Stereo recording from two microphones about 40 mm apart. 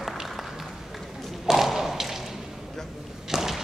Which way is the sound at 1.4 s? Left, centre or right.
Centre.